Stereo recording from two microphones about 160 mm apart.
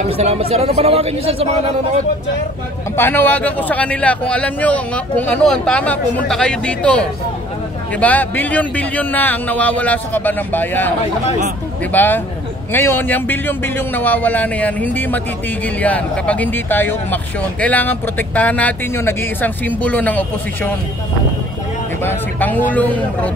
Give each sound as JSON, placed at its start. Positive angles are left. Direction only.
{"t": 0.2, "sound": "speech", "side_deg": -40}
{"t": 3.0, "sound": "speech", "side_deg": 10}
{"t": 11.9, "sound": "speech", "side_deg": 10}
{"t": 22.0, "sound": "speech", "side_deg": 10}